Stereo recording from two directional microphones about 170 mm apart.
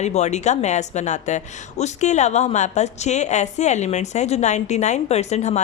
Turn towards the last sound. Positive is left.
turn(degrees=40)  # may be behind; listen again after turning